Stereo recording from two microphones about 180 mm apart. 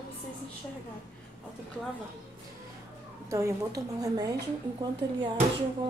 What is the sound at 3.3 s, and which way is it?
Speech, 15° right (ahead or behind).